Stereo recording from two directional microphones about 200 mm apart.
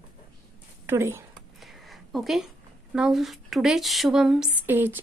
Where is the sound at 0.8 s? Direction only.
10° right (ahead or behind).